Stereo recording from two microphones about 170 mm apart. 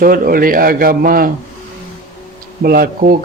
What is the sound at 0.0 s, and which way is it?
A man's voice, 55° right (ahead or behind).